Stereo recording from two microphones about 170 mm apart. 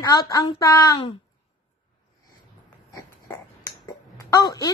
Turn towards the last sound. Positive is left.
turn(degrees=25)  # may be behind; listen again after turning